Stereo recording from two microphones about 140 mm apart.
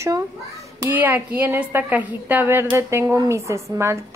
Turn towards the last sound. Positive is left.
turn(degrees=-20)  # may be behind; listen again after turning